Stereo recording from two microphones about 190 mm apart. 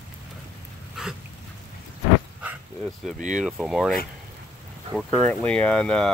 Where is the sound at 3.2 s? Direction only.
40° right (ahead or behind).